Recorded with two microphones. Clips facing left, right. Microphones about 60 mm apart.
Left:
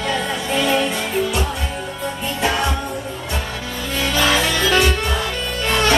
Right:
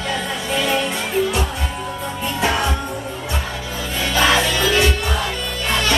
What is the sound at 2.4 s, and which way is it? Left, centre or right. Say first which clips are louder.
Music: even; centre.